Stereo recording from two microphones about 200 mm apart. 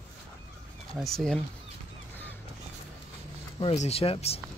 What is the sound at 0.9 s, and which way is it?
Speech, centre (ahead or behind).